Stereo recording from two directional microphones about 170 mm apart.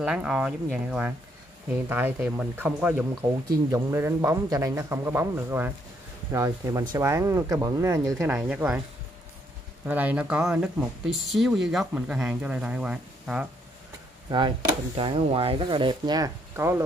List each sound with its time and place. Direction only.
0.0 s speech: 5° right (ahead or behind)
8.3 s speech: 10° right (ahead or behind)
9.8 s speech: 10° right (ahead or behind)
15.0 s speech: 30° right (ahead or behind)